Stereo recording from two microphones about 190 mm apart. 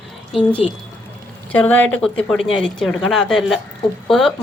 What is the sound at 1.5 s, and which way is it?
A woman's voice, 10° left (ahead or behind).